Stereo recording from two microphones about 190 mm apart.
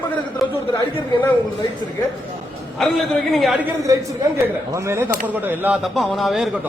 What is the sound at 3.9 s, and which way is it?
A woman's voice, 15° right (ahead or behind).